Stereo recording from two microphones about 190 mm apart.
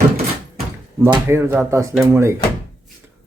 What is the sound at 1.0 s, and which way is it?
Speech, 15° right (ahead or behind).